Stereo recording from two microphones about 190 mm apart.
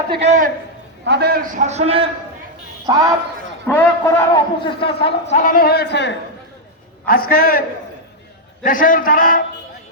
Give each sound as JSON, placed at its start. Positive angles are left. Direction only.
{"t": 0.1, "sound": "a man's voice", "side_deg": -35}
{"t": 1.0, "sound": "a man's voice", "side_deg": -60}
{"t": 2.8, "sound": "a man's voice", "side_deg": -15}
{"t": 3.7, "sound": "a man's voice", "side_deg": 10}
{"t": 4.6, "sound": "a man's voice", "side_deg": 30}
{"t": 7.0, "sound": "a man's voice", "side_deg": 50}
{"t": 8.6, "sound": "a man's voice", "side_deg": 45}